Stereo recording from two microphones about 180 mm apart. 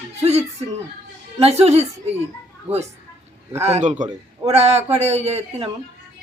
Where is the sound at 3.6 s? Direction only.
35° right (ahead or behind).